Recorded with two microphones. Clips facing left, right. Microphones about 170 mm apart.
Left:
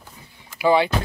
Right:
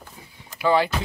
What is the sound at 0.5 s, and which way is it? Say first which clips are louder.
Speech: left 2 dB; 10° left (ahead or behind).